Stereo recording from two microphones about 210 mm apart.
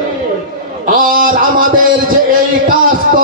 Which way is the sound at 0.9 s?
40° right (ahead or behind).